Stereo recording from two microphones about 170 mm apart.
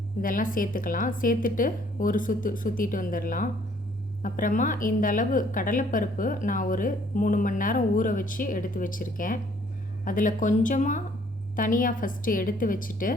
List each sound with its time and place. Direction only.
0.2 s a woman's voice: 55° left (ahead or behind)